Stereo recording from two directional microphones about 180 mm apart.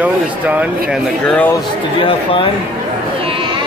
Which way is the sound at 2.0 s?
30° left (ahead or behind).